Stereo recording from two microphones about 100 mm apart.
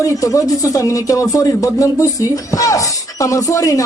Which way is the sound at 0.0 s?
35° left (ahead or behind).